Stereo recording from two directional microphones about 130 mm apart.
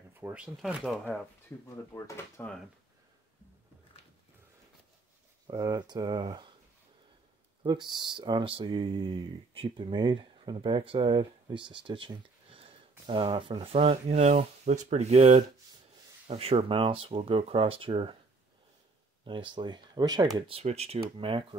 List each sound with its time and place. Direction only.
0.2 s speech: 10° right (ahead or behind)
2.0 s speech: 25° left (ahead or behind)
5.5 s speech: 30° right (ahead or behind)
7.6 s speech: 35° right (ahead or behind)
19.2 s speech: 40° right (ahead or behind)
20.3 s speech: 45° right (ahead or behind)